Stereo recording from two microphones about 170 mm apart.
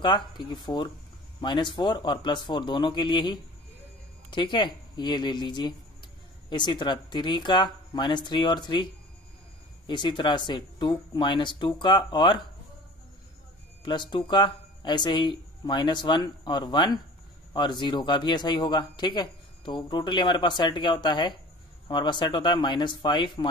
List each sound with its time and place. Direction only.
0.0 s speech: 30° left (ahead or behind)
9.8 s speech: 25° left (ahead or behind)
13.8 s speech: 25° left (ahead or behind)